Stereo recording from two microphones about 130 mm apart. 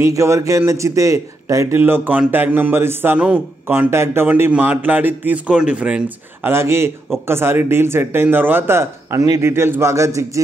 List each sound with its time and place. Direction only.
0.0 s a man's voice: 25° right (ahead or behind)